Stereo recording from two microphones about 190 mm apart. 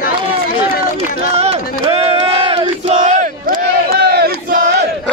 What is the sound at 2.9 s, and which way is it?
Battle cry, 40° right (ahead or behind).